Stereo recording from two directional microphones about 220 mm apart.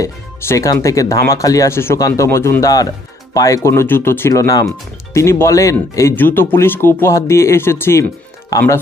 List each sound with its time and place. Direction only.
0.0 s speech: 15° left (ahead or behind)